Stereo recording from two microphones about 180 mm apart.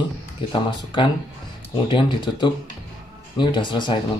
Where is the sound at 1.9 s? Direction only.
25° left (ahead or behind).